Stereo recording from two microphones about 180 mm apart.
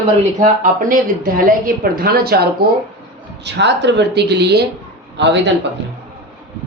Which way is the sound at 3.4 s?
75° right (ahead or behind).